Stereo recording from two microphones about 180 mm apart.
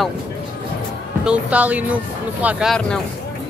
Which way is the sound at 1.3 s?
10° right (ahead or behind).